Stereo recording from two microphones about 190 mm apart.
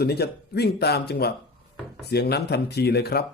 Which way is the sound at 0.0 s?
55° left (ahead or behind).